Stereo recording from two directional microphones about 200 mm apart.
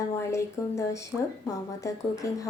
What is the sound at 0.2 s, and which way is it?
Speech, 15° left (ahead or behind).